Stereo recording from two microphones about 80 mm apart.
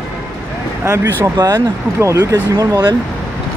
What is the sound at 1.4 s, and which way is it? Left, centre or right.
Speech, right.